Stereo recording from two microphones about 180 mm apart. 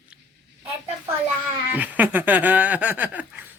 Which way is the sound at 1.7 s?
10° right (ahead or behind).